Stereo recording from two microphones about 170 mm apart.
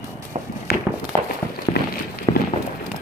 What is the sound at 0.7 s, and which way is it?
Walk, 65° left (ahead or behind).